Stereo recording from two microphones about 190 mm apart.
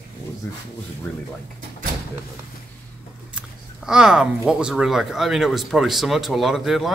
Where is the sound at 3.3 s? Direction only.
5° right (ahead or behind).